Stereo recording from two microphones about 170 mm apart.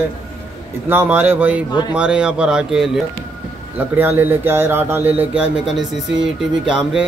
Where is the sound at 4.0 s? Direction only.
10° right (ahead or behind).